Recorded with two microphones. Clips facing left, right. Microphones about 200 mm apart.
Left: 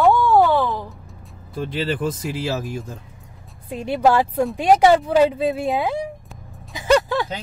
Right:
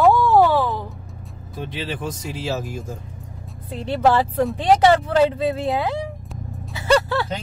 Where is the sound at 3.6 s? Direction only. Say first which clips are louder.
Left 1 dB; 10° left (ahead or behind).